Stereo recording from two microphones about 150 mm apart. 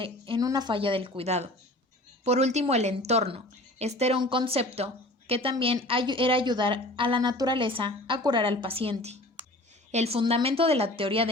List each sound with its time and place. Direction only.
0.0 s a woman's voice: 35° right (ahead or behind)
4.2 s speech: 35° right (ahead or behind)